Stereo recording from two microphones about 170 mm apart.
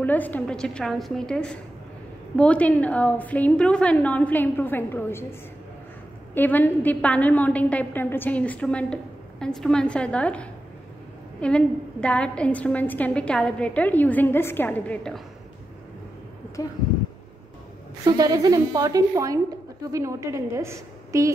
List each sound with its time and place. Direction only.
0.0 s a woman's voice: 10° left (ahead or behind)
6.3 s a woman's voice: 10° left (ahead or behind)
16.6 s speech: 20° left (ahead or behind)
18.0 s a woman's voice: 25° right (ahead or behind)